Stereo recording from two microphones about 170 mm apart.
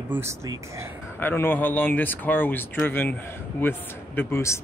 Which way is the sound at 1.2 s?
10° left (ahead or behind).